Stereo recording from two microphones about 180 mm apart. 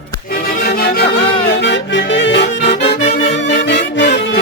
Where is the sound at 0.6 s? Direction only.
60° left (ahead or behind).